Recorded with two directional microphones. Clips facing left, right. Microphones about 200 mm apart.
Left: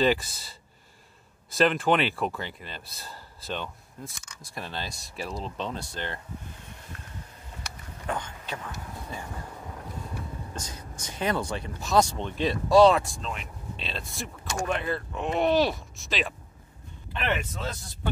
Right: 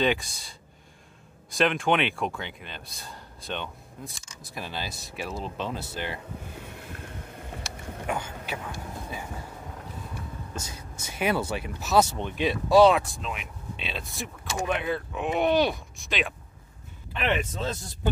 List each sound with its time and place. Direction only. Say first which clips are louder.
0.0 s speech: left 2 dB; 5° left (ahead or behind)
7.3 s vehicle: right 5 dB; 60° right (ahead or behind)
8.1 s speech: right 1 dB; 10° right (ahead or behind)
10.1 s speech: even; 5° right (ahead or behind)